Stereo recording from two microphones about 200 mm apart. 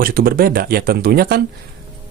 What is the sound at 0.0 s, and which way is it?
Speech, 50° right (ahead or behind).